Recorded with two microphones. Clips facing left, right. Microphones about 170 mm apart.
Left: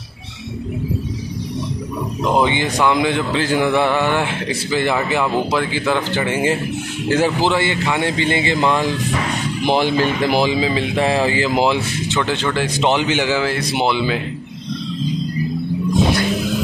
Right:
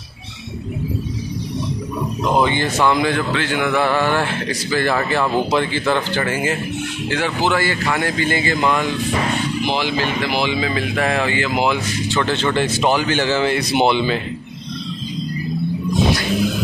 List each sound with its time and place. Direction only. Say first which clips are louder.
2.4 s speech: even; 15° left (ahead or behind)
3.3 s a man's voice: left 3 dB; 35° left (ahead or behind); by 6.2 s 10° left (ahead or behind)
6.2 s a man's voice: left 3 dB; 30° left (ahead or behind)
7.1 s a man's voice: left 4 dB; 40° left (ahead or behind)
9.7 s speech: left 8 dB; 50° left (ahead or behind); by 12.2 s 30° left (ahead or behind)
12.2 s speech: right 1 dB; 10° left (ahead or behind)